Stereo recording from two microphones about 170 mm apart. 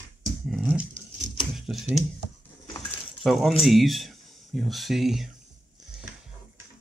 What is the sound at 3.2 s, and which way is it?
Speech, centre (ahead or behind).